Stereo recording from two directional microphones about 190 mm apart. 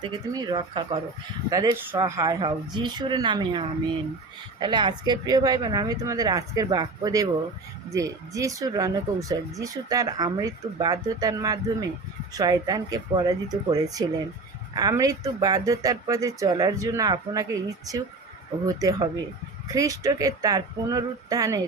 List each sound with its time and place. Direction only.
0.0 s speech: 20° right (ahead or behind)